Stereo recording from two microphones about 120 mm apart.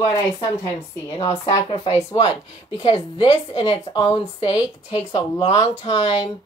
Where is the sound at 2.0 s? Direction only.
30° left (ahead or behind).